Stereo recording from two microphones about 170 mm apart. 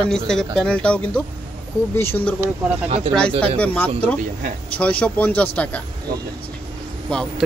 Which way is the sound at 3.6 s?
10° left (ahead or behind).